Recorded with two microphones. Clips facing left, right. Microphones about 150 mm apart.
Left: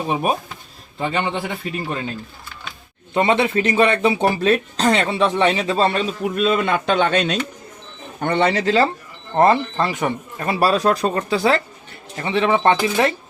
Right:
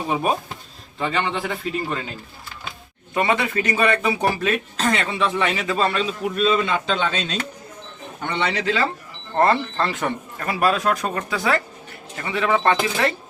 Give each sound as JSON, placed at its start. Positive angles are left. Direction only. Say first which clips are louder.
{"t": 0.1, "sound": "speech", "louder": "even", "side_deg": 20}
{"t": 3.2, "sound": "speech", "louder": "left 4 dB", "side_deg": 25}
{"t": 8.2, "sound": "speech", "louder": "left 6 dB", "side_deg": 45}
{"t": 9.4, "sound": "speech", "louder": "left 3 dB", "side_deg": 15}
{"t": 10.4, "sound": "speech", "louder": "left 3 dB", "side_deg": 30}